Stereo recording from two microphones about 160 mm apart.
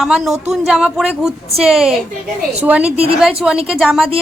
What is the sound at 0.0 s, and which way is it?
A woman's voice, 5° right (ahead or behind).